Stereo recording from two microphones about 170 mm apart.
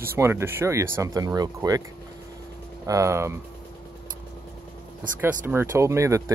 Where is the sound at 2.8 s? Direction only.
20° right (ahead or behind).